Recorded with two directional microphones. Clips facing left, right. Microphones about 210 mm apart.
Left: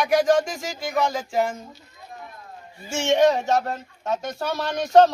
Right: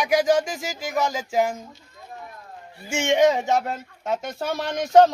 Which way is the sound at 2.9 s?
15° right (ahead or behind).